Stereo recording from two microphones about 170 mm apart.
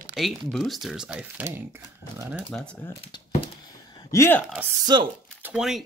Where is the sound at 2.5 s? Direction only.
5° left (ahead or behind).